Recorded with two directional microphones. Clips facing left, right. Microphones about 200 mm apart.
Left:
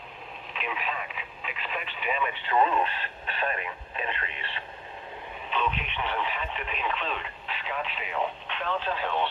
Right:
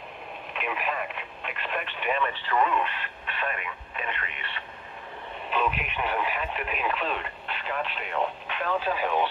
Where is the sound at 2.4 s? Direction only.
25° left (ahead or behind).